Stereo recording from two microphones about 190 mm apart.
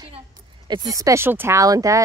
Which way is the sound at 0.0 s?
20° right (ahead or behind).